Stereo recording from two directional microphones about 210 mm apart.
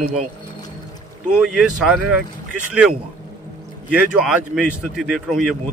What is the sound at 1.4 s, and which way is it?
Speech, centre (ahead or behind).